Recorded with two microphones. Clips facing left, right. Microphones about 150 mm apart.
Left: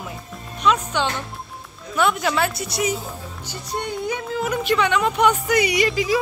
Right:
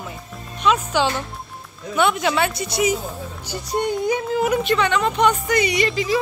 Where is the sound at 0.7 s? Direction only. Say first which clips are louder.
Right 2 dB; 5° right (ahead or behind).